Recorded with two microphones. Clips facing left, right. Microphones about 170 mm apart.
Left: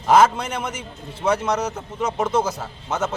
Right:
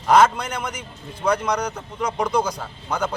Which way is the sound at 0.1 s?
5° left (ahead or behind).